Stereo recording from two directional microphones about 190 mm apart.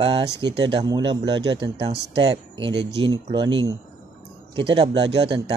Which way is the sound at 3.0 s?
25° right (ahead or behind).